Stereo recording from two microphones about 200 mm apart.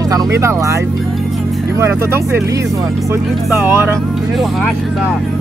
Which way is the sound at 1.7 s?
10° right (ahead or behind).